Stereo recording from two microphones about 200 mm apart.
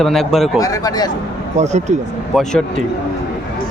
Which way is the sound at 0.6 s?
15° left (ahead or behind).